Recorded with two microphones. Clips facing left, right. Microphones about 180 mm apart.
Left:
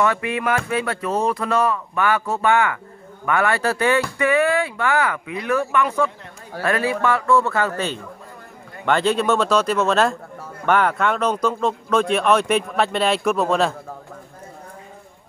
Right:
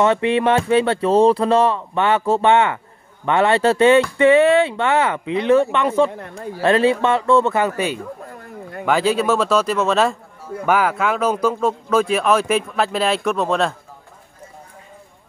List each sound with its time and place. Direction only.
0.0 s speech: 25° right (ahead or behind); by 13.7 s centre (ahead or behind)